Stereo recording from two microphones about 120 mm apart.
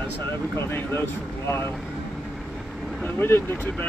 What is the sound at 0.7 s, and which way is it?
Speech, 20° left (ahead or behind).